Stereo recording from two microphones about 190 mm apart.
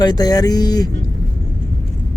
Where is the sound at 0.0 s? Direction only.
20° left (ahead or behind).